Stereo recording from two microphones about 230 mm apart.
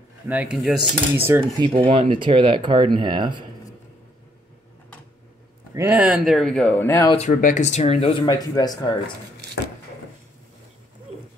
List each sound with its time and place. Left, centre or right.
0.3 s speech: centre
1.4 s speech: right
5.8 s speech: centre
7.1 s speech: left